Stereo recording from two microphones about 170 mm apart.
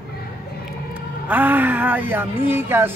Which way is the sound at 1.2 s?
10° right (ahead or behind).